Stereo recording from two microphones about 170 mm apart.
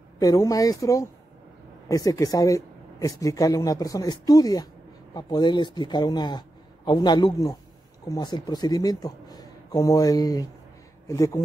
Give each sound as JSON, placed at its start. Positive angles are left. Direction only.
{"t": 0.2, "sound": "speech", "side_deg": 20}